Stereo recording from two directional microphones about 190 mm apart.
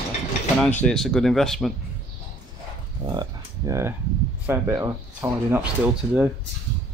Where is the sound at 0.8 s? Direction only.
5° left (ahead or behind).